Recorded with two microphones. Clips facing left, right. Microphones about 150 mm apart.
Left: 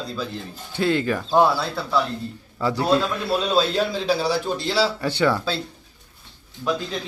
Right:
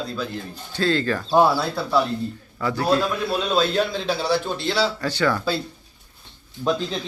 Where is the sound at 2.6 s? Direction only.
25° left (ahead or behind).